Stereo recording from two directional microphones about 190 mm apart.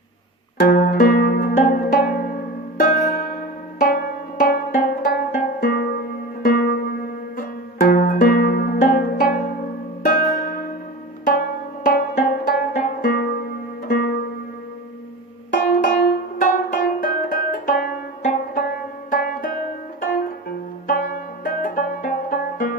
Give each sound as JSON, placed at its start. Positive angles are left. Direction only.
{"t": 0.6, "sound": "zither", "side_deg": 50}
{"t": 2.7, "sound": "music", "side_deg": 50}
{"t": 11.9, "sound": "music", "side_deg": 55}
{"t": 15.6, "sound": "music", "side_deg": 55}
{"t": 20.8, "sound": "music", "side_deg": 45}